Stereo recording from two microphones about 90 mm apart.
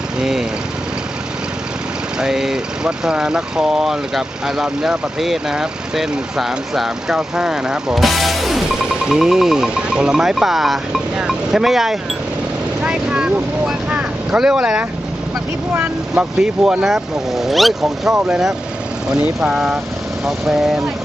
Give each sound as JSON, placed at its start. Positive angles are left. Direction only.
{"t": 0.2, "sound": "speech", "side_deg": -5}
{"t": 2.1, "sound": "speech", "side_deg": -5}
{"t": 15.7, "sound": "speech", "side_deg": -25}
{"t": 16.4, "sound": "speech", "side_deg": -5}